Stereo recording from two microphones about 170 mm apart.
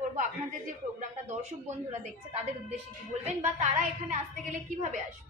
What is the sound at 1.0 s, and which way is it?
A woman's voice, 45° right (ahead or behind).